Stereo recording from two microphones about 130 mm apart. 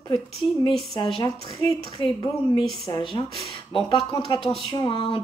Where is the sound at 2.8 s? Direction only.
40° left (ahead or behind).